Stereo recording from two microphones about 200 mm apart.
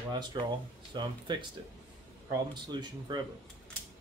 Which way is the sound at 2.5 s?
20° right (ahead or behind).